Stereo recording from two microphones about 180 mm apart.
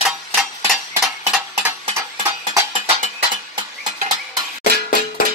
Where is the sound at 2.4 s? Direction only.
25° right (ahead or behind).